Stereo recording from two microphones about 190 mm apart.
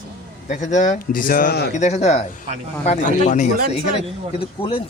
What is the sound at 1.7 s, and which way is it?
Speech, 35° left (ahead or behind).